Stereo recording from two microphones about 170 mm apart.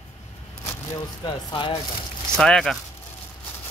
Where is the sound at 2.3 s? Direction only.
5° left (ahead or behind).